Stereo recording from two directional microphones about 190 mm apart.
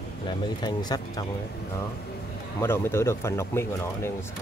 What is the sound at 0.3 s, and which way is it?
Speech, 25° left (ahead or behind).